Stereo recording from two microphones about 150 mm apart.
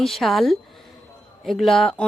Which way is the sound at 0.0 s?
Centre (ahead or behind).